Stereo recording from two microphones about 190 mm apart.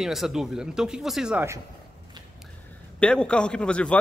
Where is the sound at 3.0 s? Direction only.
5° left (ahead or behind).